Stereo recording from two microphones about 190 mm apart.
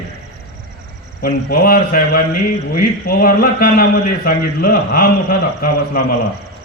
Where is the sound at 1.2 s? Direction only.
50° left (ahead or behind).